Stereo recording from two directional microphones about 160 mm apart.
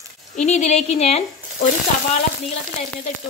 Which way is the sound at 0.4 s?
45° left (ahead or behind).